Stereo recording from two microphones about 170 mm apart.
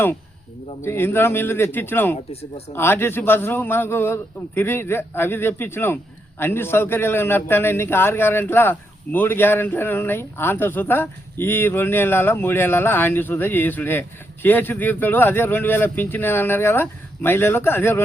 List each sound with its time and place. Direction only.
0.8 s speech: 15° left (ahead or behind)
2.1 s speech: 40° left (ahead or behind)
2.7 s speech: 15° left (ahead or behind)